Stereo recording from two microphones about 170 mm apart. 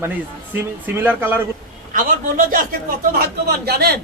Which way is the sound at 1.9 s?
55° right (ahead or behind).